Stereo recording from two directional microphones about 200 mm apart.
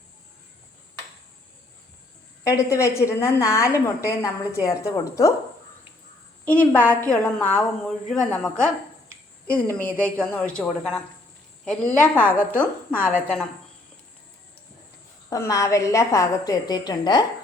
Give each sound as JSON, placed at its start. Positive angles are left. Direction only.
{"t": 2.5, "sound": "a woman's voice", "side_deg": 15}
{"t": 6.4, "sound": "a woman's voice", "side_deg": 5}
{"t": 15.3, "sound": "a woman's voice", "side_deg": 15}